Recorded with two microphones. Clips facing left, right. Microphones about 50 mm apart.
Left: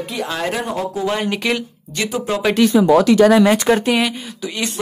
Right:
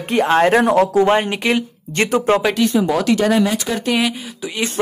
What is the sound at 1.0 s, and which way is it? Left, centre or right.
Speech, right.